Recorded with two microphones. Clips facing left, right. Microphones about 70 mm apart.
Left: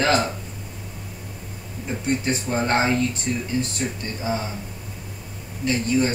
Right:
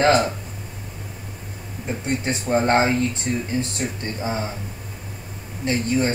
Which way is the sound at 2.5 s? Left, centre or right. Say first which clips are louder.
Right 4 dB; right.